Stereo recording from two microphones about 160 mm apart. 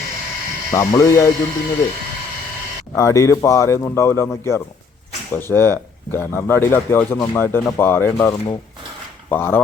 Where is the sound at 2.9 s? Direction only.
20° left (ahead or behind).